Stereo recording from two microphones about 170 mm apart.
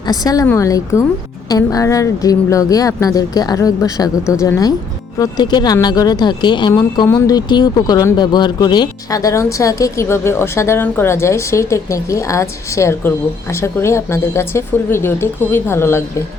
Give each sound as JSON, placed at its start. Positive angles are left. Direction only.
{"t": 0.0, "sound": "a woman's voice", "side_deg": 20}